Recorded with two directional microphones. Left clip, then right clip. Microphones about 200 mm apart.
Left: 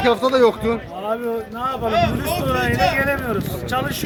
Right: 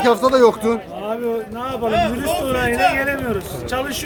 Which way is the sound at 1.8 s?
50° right (ahead or behind).